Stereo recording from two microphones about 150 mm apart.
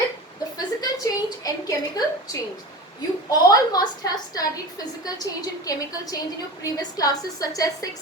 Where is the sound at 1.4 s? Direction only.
25° left (ahead or behind).